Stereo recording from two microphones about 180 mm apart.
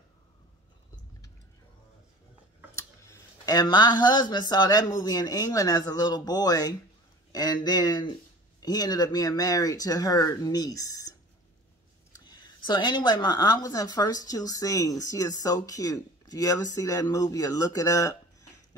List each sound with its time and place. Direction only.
2.7 s speech: 15° left (ahead or behind)